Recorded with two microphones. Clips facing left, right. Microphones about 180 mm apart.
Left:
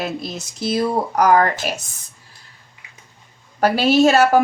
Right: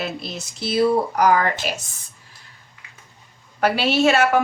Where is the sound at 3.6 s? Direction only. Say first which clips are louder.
Left 4 dB; 40° left (ahead or behind).